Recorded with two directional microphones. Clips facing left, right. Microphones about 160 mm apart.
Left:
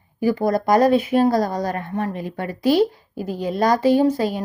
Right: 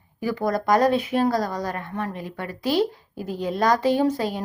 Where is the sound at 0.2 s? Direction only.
45° left (ahead or behind).